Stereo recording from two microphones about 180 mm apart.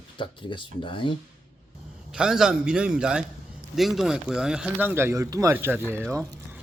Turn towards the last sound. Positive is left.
turn(degrees=-15)  # may be behind; listen again after turning